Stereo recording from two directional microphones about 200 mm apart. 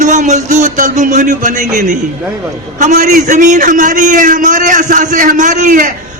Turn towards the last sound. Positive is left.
turn(degrees=-40)  # may be behind; listen again after turning